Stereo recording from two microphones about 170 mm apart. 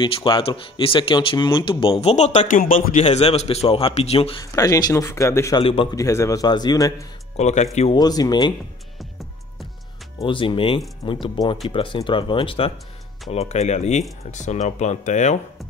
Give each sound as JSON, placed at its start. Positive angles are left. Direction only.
{"t": 0.0, "sound": "speech", "side_deg": 25}
{"t": 2.6, "sound": "a man's voice", "side_deg": 55}
{"t": 3.0, "sound": "speech", "side_deg": 40}
{"t": 4.4, "sound": "speech", "side_deg": 20}
{"t": 5.6, "sound": "speech", "side_deg": 30}
{"t": 5.9, "sound": "speech", "side_deg": 20}
{"t": 7.3, "sound": "speech", "side_deg": 40}
{"t": 7.9, "sound": "speech", "side_deg": 25}
{"t": 10.2, "sound": "speech", "side_deg": 30}